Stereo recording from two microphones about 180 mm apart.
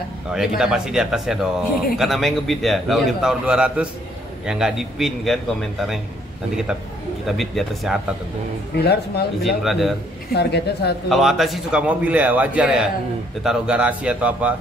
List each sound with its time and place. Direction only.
0.3 s a man's voice: 5° right (ahead or behind)
7.2 s a man's voice: centre (ahead or behind)
8.7 s a woman's voice: 65° left (ahead or behind)
9.6 s a man's voice: centre (ahead or behind)
10.3 s a woman's voice: 65° left (ahead or behind)
11.1 s a man's voice: centre (ahead or behind)